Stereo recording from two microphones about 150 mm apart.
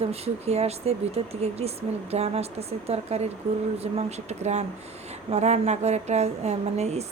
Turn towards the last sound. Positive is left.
turn(degrees=-45)  # may be behind; listen again after turning